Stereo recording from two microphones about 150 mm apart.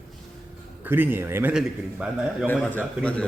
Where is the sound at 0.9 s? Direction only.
15° right (ahead or behind).